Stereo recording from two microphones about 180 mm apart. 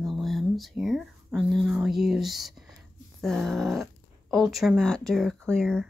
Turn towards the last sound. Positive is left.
turn(degrees=5)  # may be behind; listen again after turning